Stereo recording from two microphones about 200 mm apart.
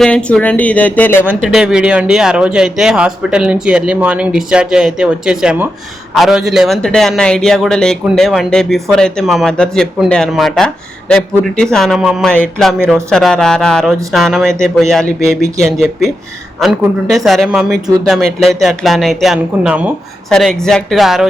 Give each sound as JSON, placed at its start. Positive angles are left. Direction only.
{"t": 0.0, "sound": "speech", "side_deg": 5}
{"t": 1.2, "sound": "a man's voice", "side_deg": -5}
{"t": 15.0, "sound": "speech", "side_deg": 35}
{"t": 15.6, "sound": "a man's voice", "side_deg": 0}